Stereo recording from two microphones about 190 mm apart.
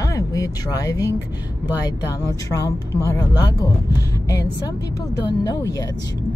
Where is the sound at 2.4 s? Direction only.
15° left (ahead or behind).